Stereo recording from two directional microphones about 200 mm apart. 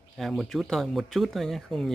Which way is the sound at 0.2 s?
Centre (ahead or behind).